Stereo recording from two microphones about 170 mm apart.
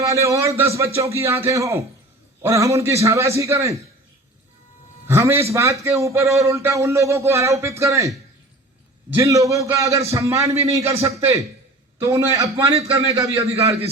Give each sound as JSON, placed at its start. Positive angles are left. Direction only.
{"t": 0.0, "sound": "speech", "side_deg": -20}
{"t": 5.0, "sound": "a man's voice", "side_deg": -15}
{"t": 9.1, "sound": "a man's voice", "side_deg": -20}
{"t": 13.6, "sound": "a man's voice", "side_deg": -35}